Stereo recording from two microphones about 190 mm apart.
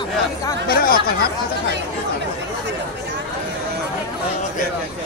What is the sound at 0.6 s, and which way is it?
Chatter, 50° left (ahead or behind).